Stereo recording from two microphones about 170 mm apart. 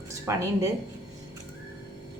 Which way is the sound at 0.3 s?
15° right (ahead or behind).